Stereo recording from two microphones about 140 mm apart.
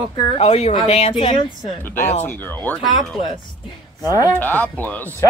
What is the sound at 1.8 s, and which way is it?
Speech, 15° left (ahead or behind).